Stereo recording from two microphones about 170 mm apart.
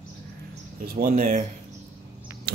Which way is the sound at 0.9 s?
50° right (ahead or behind).